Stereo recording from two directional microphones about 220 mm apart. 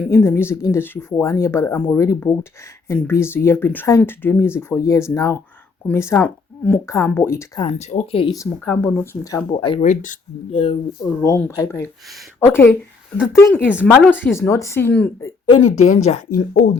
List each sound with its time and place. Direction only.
0.0 s speech: 10° left (ahead or behind)
7.8 s speech: 30° left (ahead or behind)
9.8 s speech: 35° left (ahead or behind)
10.5 s speech: 25° left (ahead or behind)
11.2 s speech: 10° left (ahead or behind)
15.4 s speech: 25° left (ahead or behind)